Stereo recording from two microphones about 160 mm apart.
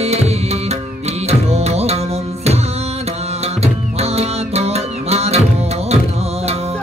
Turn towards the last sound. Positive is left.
turn(degrees=-40)  # may be behind; listen again after turning